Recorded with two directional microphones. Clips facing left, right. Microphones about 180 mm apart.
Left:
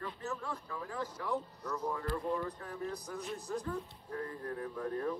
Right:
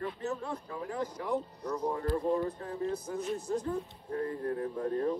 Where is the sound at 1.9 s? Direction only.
35° right (ahead or behind); by 3.8 s 20° right (ahead or behind).